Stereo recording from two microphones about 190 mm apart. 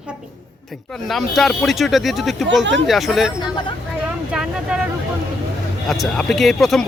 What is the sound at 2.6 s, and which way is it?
Speech, 70° right (ahead or behind).